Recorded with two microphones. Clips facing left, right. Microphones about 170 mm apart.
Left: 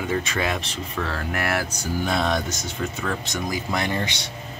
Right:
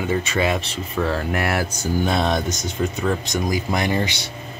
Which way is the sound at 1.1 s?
25° right (ahead or behind).